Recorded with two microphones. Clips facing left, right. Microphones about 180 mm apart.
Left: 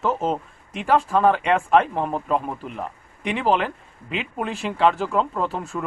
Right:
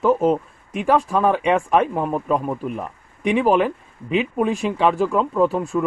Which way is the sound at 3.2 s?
10° right (ahead or behind).